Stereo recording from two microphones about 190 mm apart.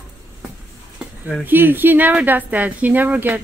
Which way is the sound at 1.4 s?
10° right (ahead or behind).